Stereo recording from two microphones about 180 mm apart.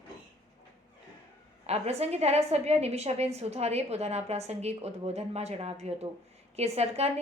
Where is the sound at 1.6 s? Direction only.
35° right (ahead or behind).